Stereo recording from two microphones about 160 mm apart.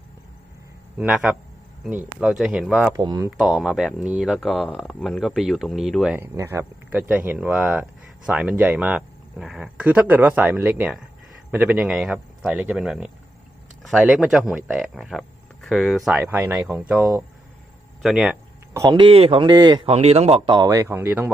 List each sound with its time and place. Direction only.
0.9 s speech: 5° right (ahead or behind)
2.9 s speech: 20° right (ahead or behind)
3.2 s speech: 5° right (ahead or behind)
6.1 s speech: 15° right (ahead or behind)
18.0 s speech: 5° right (ahead or behind)
18.7 s speech: 25° right (ahead or behind); by 20.6 s 40° right (ahead or behind)
20.6 s speech: 20° right (ahead or behind)